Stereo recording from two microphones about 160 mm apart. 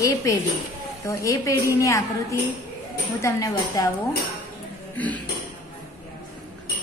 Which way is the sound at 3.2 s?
20° left (ahead or behind).